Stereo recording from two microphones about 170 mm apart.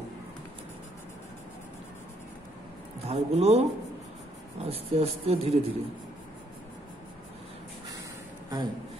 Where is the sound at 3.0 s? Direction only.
40° right (ahead or behind).